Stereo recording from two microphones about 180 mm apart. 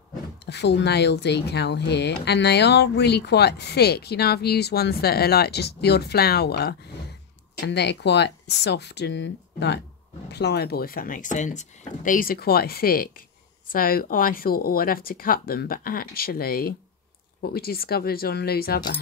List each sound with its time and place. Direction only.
0.5 s speech: 70° left (ahead or behind)